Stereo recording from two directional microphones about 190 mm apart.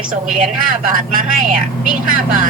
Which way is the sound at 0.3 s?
45° right (ahead or behind).